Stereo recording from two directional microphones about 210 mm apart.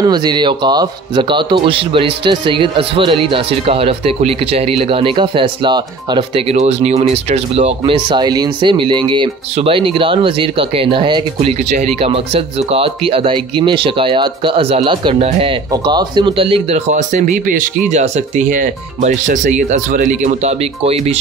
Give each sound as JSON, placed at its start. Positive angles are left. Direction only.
{"t": 0.0, "sound": "speech", "side_deg": -20}